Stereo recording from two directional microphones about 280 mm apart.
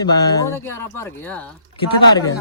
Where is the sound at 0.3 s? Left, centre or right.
Centre.